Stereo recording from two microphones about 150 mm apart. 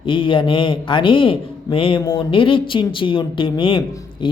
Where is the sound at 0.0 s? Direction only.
35° left (ahead or behind).